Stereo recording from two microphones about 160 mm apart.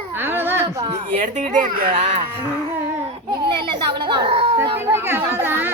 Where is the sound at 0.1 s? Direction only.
15° right (ahead or behind).